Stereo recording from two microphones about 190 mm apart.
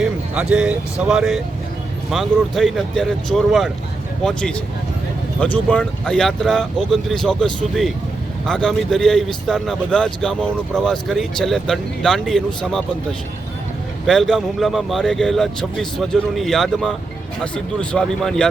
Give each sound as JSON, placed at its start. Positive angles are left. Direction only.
{"t": 0.0, "sound": "a man's voice", "side_deg": -5}